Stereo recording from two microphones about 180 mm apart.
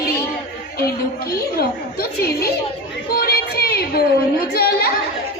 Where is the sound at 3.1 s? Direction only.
60° left (ahead or behind).